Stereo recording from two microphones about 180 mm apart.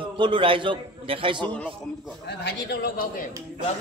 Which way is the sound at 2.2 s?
65° left (ahead or behind).